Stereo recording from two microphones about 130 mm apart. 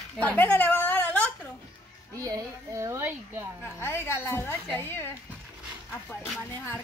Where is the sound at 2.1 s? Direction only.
25° right (ahead or behind).